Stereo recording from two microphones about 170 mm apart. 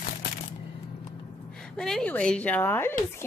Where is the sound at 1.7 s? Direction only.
5° left (ahead or behind).